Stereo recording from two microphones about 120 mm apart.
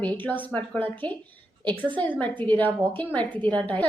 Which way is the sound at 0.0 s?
15° left (ahead or behind).